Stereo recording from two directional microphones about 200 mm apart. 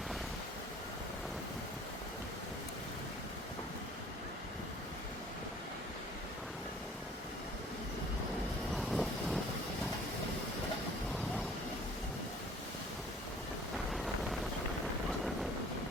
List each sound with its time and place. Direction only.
8.7 s vehicle: centre (ahead or behind)
13.9 s wind noise: centre (ahead or behind)